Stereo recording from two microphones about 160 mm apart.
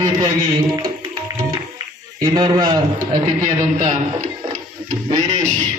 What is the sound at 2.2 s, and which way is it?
Speech, 30° right (ahead or behind).